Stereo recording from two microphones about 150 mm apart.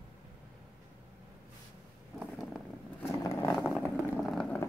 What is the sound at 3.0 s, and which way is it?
Vehicle, 15° left (ahead or behind).